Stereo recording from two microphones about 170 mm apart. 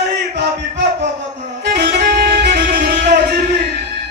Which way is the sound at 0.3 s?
85° right.